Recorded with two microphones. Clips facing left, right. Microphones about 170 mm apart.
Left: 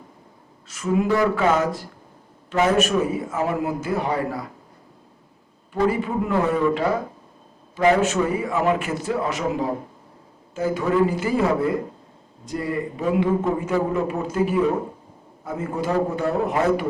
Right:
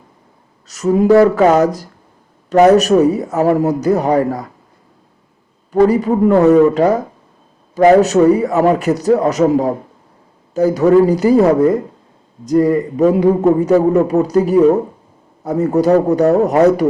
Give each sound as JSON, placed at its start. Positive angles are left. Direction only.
{"t": 0.7, "sound": "a man's voice", "side_deg": -40}
{"t": 5.7, "sound": "a man's voice", "side_deg": -40}